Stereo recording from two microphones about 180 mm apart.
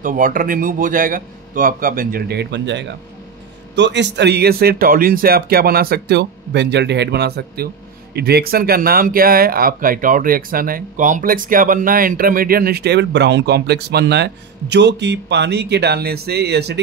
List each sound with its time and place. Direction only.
0.0 s a man's voice: 50° right (ahead or behind); by 16.8 s 65° right (ahead or behind)